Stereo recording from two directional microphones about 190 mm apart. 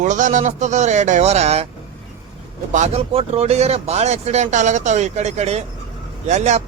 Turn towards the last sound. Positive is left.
turn(degrees=-35)  # may be behind; listen again after turning